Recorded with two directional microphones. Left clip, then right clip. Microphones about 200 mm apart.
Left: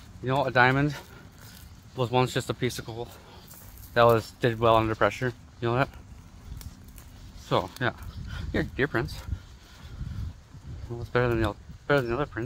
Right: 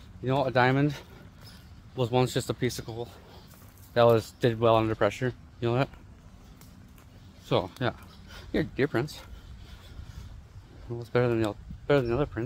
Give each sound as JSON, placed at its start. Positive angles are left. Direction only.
{"t": 0.2, "sound": "speech", "side_deg": -15}
{"t": 7.5, "sound": "speech", "side_deg": -15}
{"t": 11.0, "sound": "speech", "side_deg": -20}